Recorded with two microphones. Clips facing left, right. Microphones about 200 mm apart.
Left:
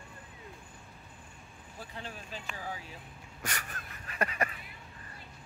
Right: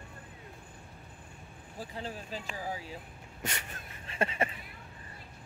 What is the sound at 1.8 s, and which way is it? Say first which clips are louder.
Speech: right 4 dB; 35° right (ahead or behind).